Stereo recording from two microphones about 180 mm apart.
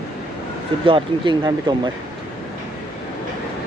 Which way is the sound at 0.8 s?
25° right (ahead or behind).